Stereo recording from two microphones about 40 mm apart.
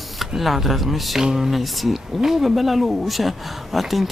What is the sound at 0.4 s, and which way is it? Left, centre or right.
Speech, centre.